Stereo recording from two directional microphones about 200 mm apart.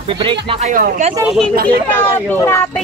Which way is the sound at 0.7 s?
40° right (ahead or behind).